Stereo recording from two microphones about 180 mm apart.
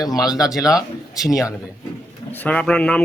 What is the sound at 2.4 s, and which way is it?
Speech, 5° left (ahead or behind).